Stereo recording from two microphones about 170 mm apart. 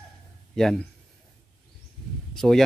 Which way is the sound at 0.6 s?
5° left (ahead or behind).